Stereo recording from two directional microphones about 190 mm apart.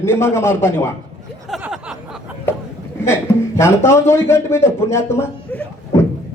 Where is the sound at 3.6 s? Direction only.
15° left (ahead or behind).